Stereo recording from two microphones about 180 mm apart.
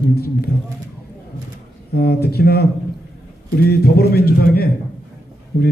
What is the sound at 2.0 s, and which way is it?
Speech, 60° left (ahead or behind).